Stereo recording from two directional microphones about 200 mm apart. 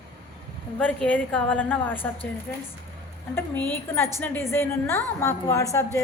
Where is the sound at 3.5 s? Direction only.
10° left (ahead or behind).